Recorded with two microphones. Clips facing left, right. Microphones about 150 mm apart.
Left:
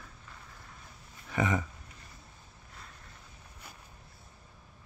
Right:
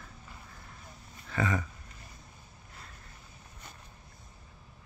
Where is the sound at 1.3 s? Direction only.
20° left (ahead or behind).